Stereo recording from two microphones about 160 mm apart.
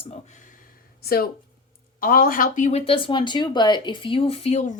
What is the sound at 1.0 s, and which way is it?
Speech, 70° left (ahead or behind).